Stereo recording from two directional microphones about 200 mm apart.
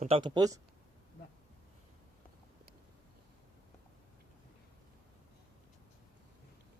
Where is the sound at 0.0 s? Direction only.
25° right (ahead or behind).